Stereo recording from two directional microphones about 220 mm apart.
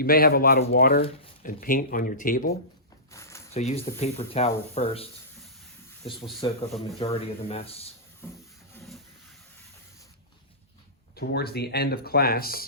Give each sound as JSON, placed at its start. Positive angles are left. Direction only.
{"t": 0.0, "sound": "speech", "side_deg": 40}
{"t": 3.1, "sound": "a sound", "side_deg": 15}
{"t": 3.5, "sound": "speech", "side_deg": 30}
{"t": 6.1, "sound": "speech", "side_deg": 0}
{"t": 7.0, "sound": "speech", "side_deg": 25}
{"t": 8.2, "sound": "a sound", "side_deg": 10}
{"t": 8.7, "sound": "music", "side_deg": 0}
{"t": 11.1, "sound": "speech", "side_deg": 45}